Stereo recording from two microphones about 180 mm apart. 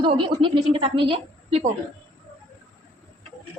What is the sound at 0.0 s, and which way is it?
A woman's voice, 30° right (ahead or behind).